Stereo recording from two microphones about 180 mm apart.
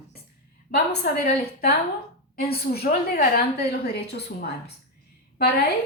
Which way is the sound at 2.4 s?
60° left (ahead or behind).